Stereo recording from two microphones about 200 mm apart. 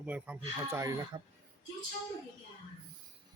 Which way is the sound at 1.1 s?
25° right (ahead or behind).